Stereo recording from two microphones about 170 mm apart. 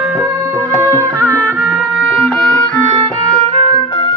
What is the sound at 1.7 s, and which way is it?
Music, 5° right (ahead or behind).